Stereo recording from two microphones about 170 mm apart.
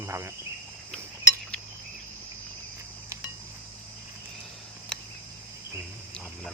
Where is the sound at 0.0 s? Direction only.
15° right (ahead or behind).